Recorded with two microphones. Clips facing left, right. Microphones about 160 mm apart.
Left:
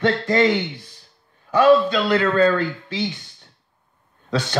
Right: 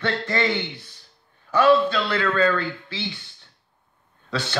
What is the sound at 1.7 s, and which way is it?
Speech, 15° left (ahead or behind).